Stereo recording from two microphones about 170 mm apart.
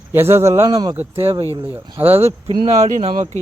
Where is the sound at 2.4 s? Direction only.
35° right (ahead or behind).